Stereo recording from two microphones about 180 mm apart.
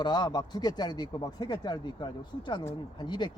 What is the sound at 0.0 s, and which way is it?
Speech, 25° left (ahead or behind).